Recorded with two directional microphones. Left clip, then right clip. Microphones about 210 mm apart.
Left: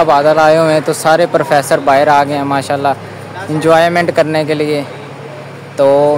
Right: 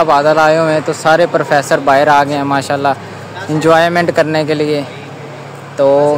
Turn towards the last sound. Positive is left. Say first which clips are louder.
# left 1 dB
turn(degrees=5)  # may be behind; listen again after turning